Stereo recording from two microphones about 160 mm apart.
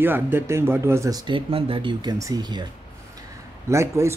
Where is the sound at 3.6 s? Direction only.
15° right (ahead or behind).